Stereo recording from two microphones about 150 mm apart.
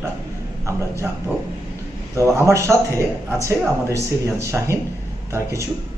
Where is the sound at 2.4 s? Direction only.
20° right (ahead or behind).